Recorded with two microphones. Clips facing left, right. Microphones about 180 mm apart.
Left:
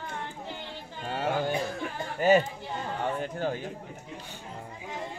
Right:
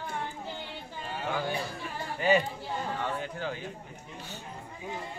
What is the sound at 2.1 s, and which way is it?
A man's voice, 45° left (ahead or behind).